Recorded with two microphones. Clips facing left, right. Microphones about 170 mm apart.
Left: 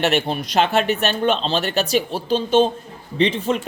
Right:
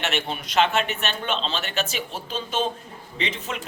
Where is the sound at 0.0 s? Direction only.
40° left (ahead or behind).